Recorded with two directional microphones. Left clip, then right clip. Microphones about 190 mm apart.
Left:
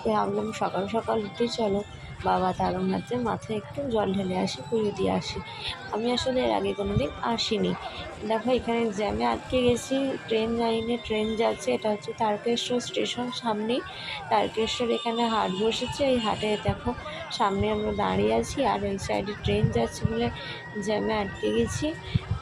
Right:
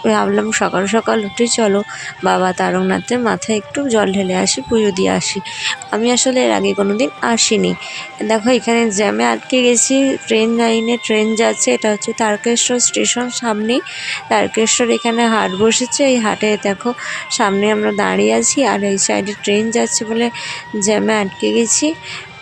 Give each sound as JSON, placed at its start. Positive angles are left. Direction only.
{"t": 0.1, "sound": "speech", "side_deg": -35}